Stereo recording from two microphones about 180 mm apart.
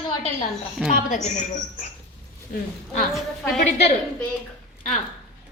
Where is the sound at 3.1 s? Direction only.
Centre (ahead or behind).